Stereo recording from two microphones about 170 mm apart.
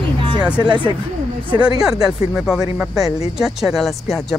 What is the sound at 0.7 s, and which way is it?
Speech, 30° right (ahead or behind).